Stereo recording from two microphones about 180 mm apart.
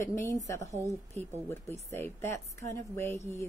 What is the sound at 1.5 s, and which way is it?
A woman's voice, 10° left (ahead or behind).